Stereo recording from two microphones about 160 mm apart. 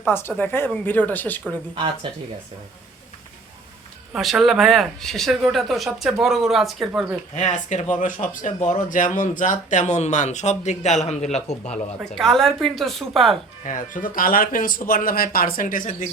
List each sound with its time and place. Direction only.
0.1 s speech: 15° left (ahead or behind)
4.1 s speech: centre (ahead or behind)
7.3 s speech: 50° left (ahead or behind)
11.7 s speech: centre (ahead or behind)
13.7 s speech: 55° left (ahead or behind)